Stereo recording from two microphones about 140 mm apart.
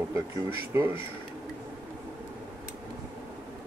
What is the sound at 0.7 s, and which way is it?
Speech, 15° right (ahead or behind).